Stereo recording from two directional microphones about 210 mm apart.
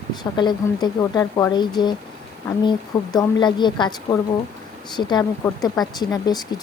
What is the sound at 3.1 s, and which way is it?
Speech, 20° left (ahead or behind).